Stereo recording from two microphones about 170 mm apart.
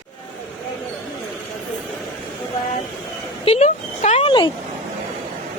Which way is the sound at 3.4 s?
40° left (ahead or behind).